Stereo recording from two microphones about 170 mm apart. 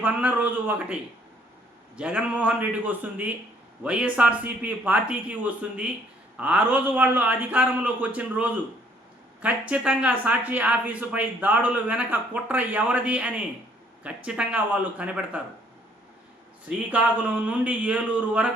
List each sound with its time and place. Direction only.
0.0 s speech: 10° right (ahead or behind)
2.0 s speech: 5° right (ahead or behind)
16.6 s speech: 10° right (ahead or behind)